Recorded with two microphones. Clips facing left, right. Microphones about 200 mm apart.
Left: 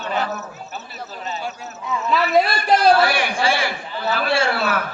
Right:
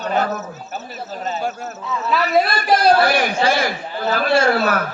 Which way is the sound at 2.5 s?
40° right (ahead or behind).